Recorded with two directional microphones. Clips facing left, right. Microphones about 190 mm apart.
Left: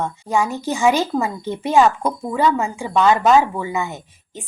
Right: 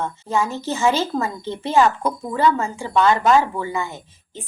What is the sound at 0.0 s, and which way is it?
A woman's voice, 15° left (ahead or behind).